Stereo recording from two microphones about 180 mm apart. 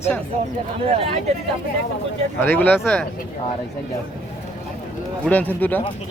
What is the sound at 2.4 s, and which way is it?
Speech, 10° left (ahead or behind).